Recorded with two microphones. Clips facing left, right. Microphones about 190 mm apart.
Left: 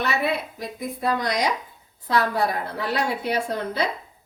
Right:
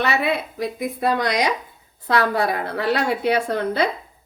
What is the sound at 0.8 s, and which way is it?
A woman's voice, 75° right (ahead or behind).